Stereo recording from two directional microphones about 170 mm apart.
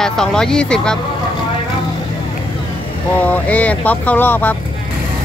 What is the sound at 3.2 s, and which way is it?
Speech, 10° left (ahead or behind).